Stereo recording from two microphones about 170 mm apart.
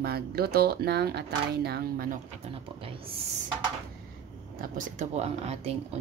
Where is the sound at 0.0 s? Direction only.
70° right (ahead or behind).